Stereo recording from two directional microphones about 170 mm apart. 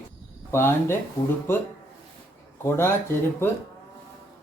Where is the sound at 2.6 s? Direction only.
15° left (ahead or behind).